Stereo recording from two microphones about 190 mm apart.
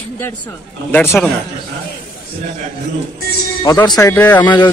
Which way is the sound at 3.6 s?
20° left (ahead or behind).